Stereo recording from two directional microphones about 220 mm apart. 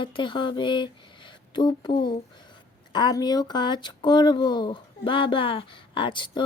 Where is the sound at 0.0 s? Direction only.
20° left (ahead or behind).